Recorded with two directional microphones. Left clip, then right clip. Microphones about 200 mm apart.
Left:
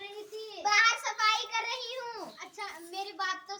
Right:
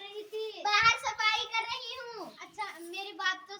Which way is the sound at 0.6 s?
20° left (ahead or behind).